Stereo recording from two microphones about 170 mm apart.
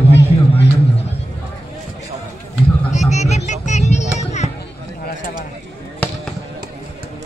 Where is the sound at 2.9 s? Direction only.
40° left (ahead or behind).